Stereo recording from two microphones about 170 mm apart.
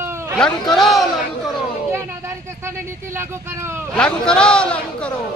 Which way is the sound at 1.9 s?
15° right (ahead or behind).